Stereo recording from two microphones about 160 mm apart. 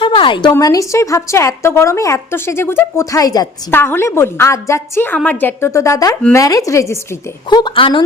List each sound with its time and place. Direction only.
0.0 s a sound: 30° left (ahead or behind)
0.5 s a woman's voice: 20° left (ahead or behind)
7.5 s a woman's voice: 30° left (ahead or behind)